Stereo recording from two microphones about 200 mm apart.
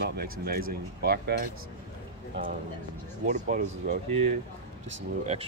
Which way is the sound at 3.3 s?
40° right (ahead or behind).